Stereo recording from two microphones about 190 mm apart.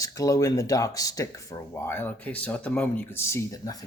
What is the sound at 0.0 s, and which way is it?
Speech, 20° left (ahead or behind).